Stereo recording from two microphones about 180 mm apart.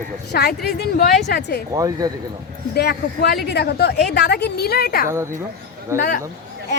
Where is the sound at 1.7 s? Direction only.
20° right (ahead or behind).